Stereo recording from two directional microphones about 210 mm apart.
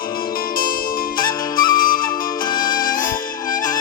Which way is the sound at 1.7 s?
40° left (ahead or behind).